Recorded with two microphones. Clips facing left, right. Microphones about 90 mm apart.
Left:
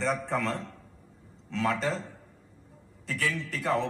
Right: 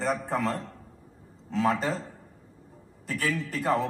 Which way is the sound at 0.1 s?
40° right (ahead or behind).